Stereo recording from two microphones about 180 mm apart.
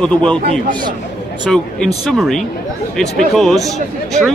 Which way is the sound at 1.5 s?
Centre (ahead or behind).